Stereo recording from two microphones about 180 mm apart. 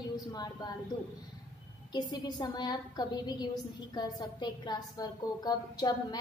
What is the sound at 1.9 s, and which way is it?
A woman's voice, 25° left (ahead or behind).